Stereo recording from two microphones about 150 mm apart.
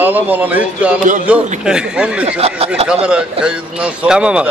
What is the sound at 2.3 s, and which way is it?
Speech, 45° right (ahead or behind).